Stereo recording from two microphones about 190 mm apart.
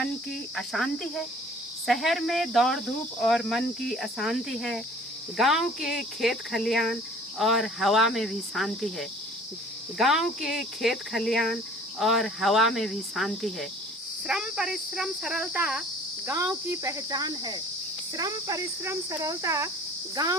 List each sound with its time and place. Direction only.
0.0 s speech: centre (ahead or behind)
16.2 s speech: 15° right (ahead or behind)
20.2 s cricket: 20° right (ahead or behind)